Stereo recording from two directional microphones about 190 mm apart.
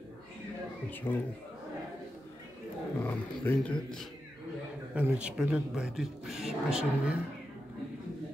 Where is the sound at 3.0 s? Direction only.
10° left (ahead or behind).